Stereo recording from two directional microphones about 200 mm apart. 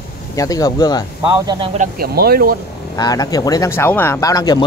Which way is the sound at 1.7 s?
50° right (ahead or behind).